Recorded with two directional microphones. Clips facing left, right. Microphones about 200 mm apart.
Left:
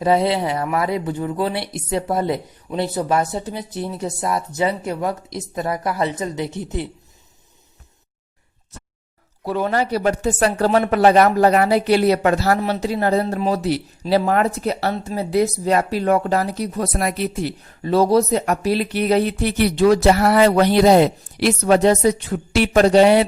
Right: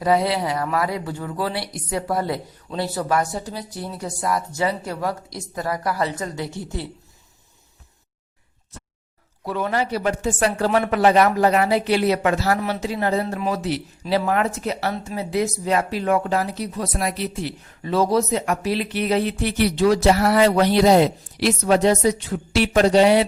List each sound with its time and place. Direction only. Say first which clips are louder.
0.0 s speech: left 2 dB; 25° left (ahead or behind)
9.4 s speech: left 3 dB; 35° left (ahead or behind); by 23.2 s 55° left (ahead or behind)